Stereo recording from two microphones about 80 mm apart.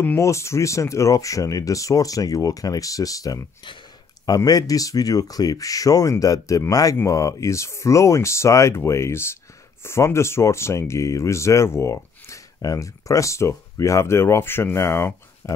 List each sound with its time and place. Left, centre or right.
0.2 s speech: left
4.5 s speech: left